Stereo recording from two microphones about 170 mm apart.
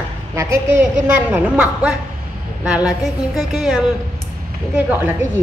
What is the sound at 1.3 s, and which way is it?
A woman's voice, 5° right (ahead or behind).